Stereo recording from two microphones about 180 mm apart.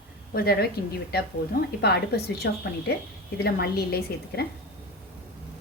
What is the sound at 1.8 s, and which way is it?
A woman's voice, 65° left (ahead or behind).